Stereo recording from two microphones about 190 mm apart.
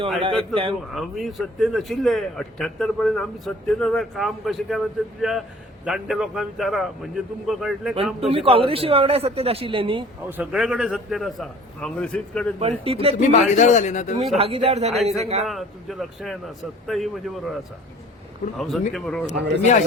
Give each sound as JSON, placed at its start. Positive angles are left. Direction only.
{"t": 0.2, "sound": "a man's voice", "side_deg": -30}
{"t": 0.9, "sound": "a man's voice", "side_deg": 0}
{"t": 8.3, "sound": "a man's voice", "side_deg": -30}
{"t": 10.2, "sound": "a man's voice", "side_deg": -10}
{"t": 12.5, "sound": "speech", "side_deg": -30}
{"t": 13.2, "sound": "speech", "side_deg": 40}
{"t": 14.3, "sound": "speech", "side_deg": -30}
{"t": 15.4, "sound": "a man's voice", "side_deg": 0}
{"t": 18.5, "sound": "a man's voice", "side_deg": 0}